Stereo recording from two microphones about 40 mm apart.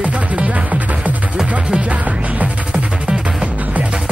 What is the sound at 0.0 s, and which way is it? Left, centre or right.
Music, right.